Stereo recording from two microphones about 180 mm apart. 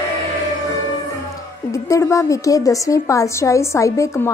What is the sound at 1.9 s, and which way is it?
A woman's voice, 15° left (ahead or behind).